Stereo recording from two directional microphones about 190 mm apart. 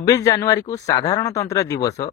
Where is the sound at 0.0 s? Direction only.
20° left (ahead or behind).